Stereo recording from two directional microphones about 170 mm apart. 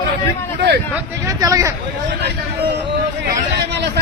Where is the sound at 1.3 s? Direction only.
20° right (ahead or behind).